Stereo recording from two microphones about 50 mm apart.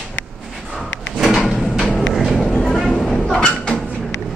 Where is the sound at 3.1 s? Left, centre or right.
Centre.